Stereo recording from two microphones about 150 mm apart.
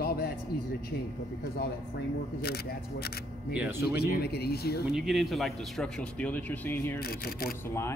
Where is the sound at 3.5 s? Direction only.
10° right (ahead or behind).